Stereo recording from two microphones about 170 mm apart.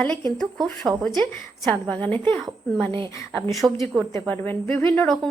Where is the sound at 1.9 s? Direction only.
10° left (ahead or behind).